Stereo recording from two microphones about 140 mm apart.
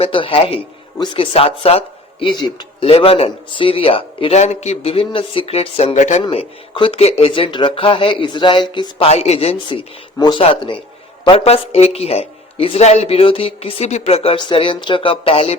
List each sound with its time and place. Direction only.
0.0 s speech: 40° left (ahead or behind); by 6.2 s 55° left (ahead or behind)
6.2 s speech: 40° left (ahead or behind)
14.3 s speech: 35° left (ahead or behind)